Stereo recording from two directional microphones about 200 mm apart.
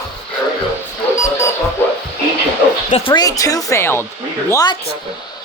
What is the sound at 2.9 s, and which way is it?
A woman's voice, 25° left (ahead or behind).